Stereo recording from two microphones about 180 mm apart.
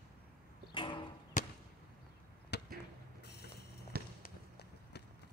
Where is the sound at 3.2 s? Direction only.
65° left (ahead or behind).